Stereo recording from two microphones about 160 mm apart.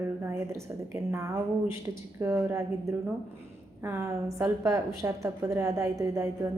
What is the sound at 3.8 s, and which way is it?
A woman's voice, 15° right (ahead or behind).